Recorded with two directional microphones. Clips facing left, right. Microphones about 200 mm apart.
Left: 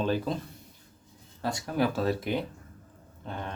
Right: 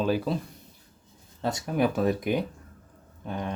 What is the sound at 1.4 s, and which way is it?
Speech, 20° right (ahead or behind).